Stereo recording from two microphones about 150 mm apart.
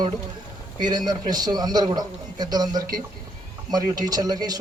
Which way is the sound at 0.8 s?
25° right (ahead or behind).